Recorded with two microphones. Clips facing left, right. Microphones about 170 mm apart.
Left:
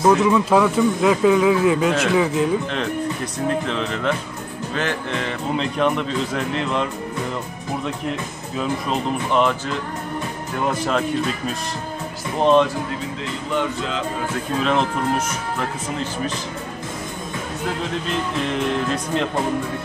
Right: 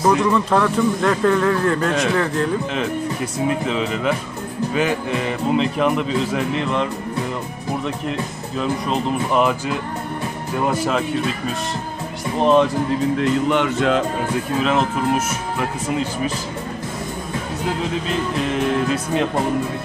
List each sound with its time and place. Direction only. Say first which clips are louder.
0.1 s a man's voice: left 2 dB; 5° left (ahead or behind)
8.5 s a man's voice: right 2 dB; centre (ahead or behind)
13.5 s music: right 6 dB; 75° right (ahead or behind)
14.6 s a man's voice: even; 5° right (ahead or behind)
18.5 s a man's voice: right 3 dB; 5° right (ahead or behind)